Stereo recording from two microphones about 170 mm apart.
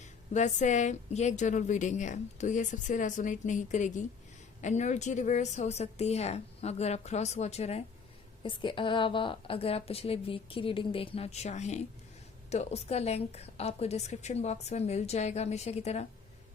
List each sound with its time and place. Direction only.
0.0 s a woman's voice: 45° left (ahead or behind)